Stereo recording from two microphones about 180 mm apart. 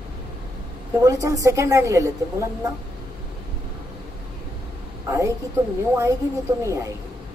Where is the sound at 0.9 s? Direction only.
20° right (ahead or behind).